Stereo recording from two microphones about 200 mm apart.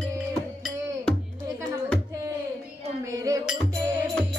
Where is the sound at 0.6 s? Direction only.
Centre (ahead or behind).